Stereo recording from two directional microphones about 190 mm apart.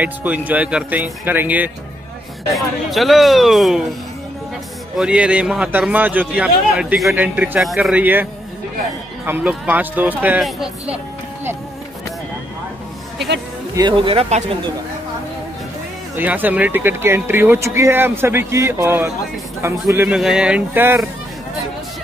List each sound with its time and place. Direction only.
0.0 s speech: 10° right (ahead or behind)
4.9 s speech: 5° right (ahead or behind)
13.7 s speech: 25° right (ahead or behind)
16.2 s speech: 10° right (ahead or behind)